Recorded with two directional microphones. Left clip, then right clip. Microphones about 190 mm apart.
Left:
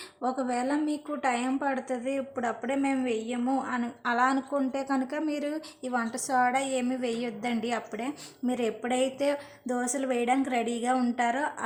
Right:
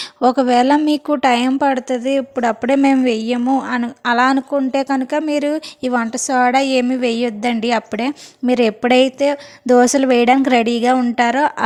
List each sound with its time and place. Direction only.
0.2 s a woman's voice: 40° right (ahead or behind)
3.0 s speech: 55° right (ahead or behind)
3.3 s a woman's voice: 35° right (ahead or behind)